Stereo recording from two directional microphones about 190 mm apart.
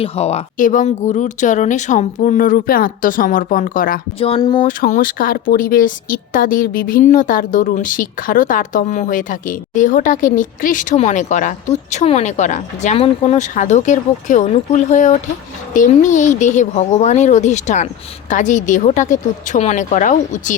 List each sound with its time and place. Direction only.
0.0 s a woman's voice: 35° left (ahead or behind)
4.2 s speech: 25° left (ahead or behind)
4.6 s a woman's voice: 45° left (ahead or behind)